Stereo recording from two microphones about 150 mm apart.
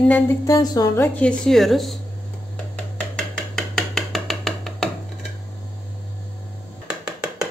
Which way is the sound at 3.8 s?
Centre (ahead or behind).